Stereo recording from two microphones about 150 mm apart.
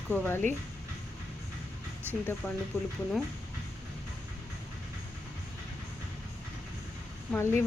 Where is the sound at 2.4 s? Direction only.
15° left (ahead or behind).